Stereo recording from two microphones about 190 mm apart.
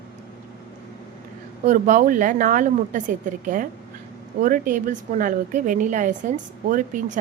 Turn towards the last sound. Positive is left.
turn(degrees=-45)  # may be behind; listen again after turning